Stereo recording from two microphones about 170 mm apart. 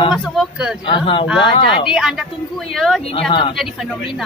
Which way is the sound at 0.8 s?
30° left (ahead or behind).